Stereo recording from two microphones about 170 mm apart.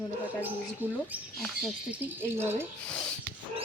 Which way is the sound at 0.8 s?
10° right (ahead or behind).